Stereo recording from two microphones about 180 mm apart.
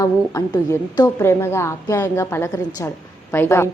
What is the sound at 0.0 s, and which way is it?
A woman's voice, 20° left (ahead or behind).